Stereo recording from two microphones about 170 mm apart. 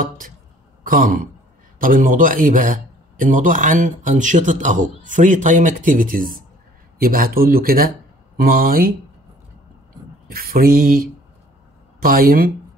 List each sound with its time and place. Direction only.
0.8 s a man's voice: 55° right (ahead or behind)
10.2 s speech: 60° right (ahead or behind)